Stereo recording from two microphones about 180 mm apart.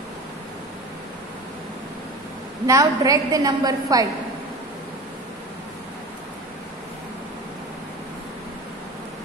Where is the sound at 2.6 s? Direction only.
20° right (ahead or behind).